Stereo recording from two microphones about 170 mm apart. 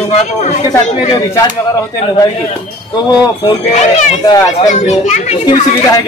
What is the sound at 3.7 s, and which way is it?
Speech, 45° left (ahead or behind).